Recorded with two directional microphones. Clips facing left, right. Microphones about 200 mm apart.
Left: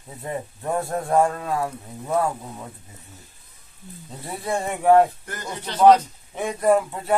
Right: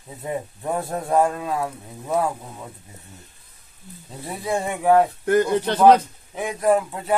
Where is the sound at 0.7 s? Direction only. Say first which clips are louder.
Even; centre (ahead or behind).